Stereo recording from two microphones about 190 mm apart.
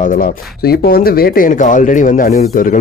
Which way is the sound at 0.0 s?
45° left (ahead or behind).